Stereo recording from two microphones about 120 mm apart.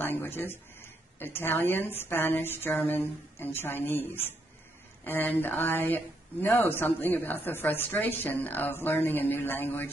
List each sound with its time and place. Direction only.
0.0 s speech: 15° left (ahead or behind)